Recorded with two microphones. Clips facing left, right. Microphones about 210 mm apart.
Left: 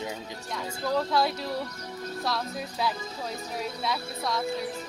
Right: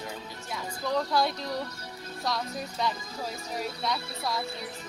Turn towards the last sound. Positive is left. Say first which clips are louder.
# left 2 dB
turn(degrees=0)  # may be behind; listen again after turning